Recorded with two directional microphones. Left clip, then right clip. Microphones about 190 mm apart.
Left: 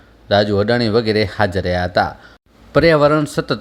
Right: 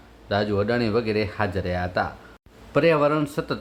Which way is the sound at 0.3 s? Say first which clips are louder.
Left 9 dB; 20° left (ahead or behind).